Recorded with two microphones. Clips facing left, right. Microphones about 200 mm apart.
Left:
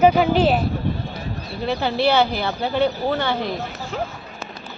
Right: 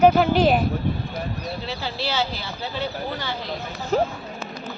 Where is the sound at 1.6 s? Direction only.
60° left (ahead or behind).